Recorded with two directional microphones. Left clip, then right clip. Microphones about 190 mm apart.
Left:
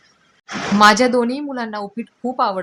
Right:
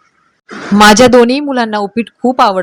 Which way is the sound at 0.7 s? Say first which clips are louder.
Right 8 dB; 45° right (ahead or behind).